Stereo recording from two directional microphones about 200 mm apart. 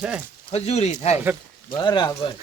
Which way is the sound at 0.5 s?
30° left (ahead or behind).